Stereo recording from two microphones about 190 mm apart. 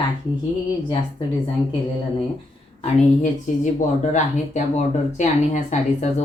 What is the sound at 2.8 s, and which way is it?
Speech, 40° left (ahead or behind).